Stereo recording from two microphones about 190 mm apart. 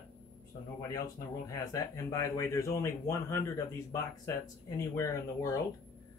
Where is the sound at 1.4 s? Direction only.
15° left (ahead or behind).